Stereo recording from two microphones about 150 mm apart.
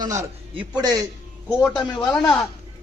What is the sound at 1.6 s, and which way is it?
Speech, 5° left (ahead or behind).